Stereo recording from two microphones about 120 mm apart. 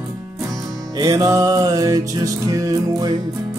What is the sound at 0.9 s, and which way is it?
Music, 30° right (ahead or behind).